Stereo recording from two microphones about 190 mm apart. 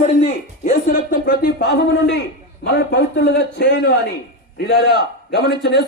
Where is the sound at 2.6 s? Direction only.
65° left (ahead or behind).